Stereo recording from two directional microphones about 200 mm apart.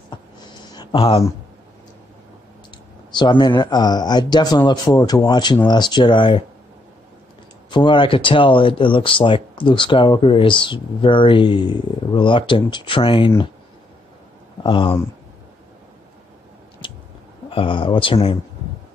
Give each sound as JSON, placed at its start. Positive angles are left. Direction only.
{"t": 0.7, "sound": "a sound", "side_deg": 30}
{"t": 3.1, "sound": "speech", "side_deg": 25}
{"t": 7.7, "sound": "speech", "side_deg": 25}
{"t": 14.6, "sound": "speech", "side_deg": 25}
{"t": 16.8, "sound": "chewing", "side_deg": 25}
{"t": 17.5, "sound": "speech", "side_deg": 25}